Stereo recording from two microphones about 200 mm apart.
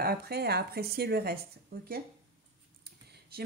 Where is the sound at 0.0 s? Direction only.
50° right (ahead or behind).